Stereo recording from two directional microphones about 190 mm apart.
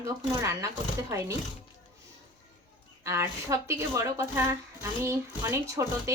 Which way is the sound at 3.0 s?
15° right (ahead or behind).